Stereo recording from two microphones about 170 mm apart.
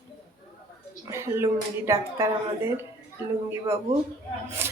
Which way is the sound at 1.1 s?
15° right (ahead or behind).